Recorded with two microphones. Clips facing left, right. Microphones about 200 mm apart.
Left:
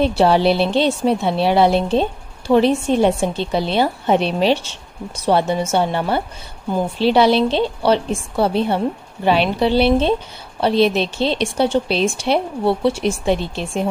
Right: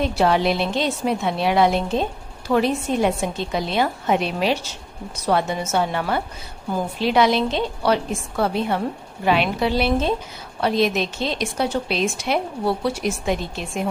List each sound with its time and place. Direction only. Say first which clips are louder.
0.0 s a woman's voice: left 4 dB; 30° left (ahead or behind)